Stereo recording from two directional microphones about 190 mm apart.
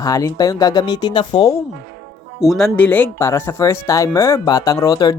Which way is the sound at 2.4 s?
Centre (ahead or behind).